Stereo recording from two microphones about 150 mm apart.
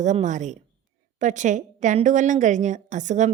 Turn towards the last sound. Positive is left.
turn(degrees=-55)  # may be behind; listen again after turning